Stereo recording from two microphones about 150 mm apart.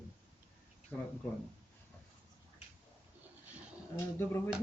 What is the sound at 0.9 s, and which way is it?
Speech, 10° right (ahead or behind).